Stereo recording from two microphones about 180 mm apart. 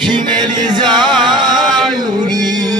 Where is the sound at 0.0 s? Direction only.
25° right (ahead or behind).